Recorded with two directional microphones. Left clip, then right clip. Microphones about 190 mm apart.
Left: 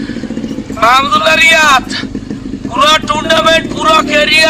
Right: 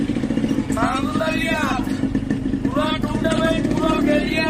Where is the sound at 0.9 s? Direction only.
50° left (ahead or behind).